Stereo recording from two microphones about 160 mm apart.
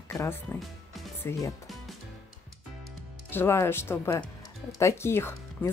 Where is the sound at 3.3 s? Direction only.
15° left (ahead or behind).